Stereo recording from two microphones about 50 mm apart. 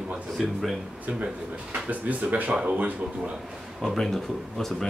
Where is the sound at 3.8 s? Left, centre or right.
Centre.